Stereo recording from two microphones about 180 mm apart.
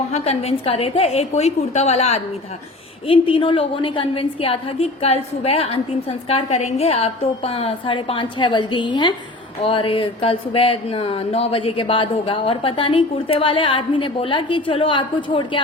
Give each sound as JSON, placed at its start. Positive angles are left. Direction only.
{"t": 0.1, "sound": "a woman's voice", "side_deg": 35}